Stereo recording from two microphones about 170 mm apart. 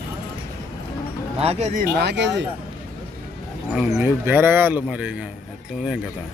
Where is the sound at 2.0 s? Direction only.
90° right.